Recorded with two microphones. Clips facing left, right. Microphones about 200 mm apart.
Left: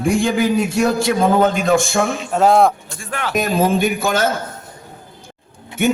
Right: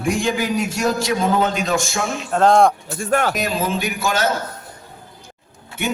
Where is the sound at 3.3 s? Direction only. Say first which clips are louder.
Left 5 dB; 50° left (ahead or behind).